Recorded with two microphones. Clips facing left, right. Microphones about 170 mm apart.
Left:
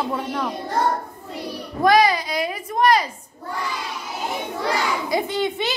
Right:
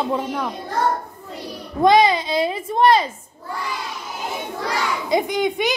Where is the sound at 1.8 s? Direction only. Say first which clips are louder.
Right 2 dB; 25° right (ahead or behind).